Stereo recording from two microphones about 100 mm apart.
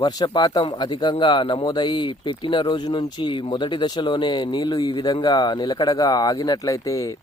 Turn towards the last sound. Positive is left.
turn(degrees=35)  # may be behind; listen again after turning